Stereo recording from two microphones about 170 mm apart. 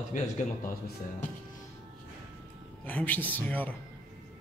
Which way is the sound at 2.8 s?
10° left (ahead or behind).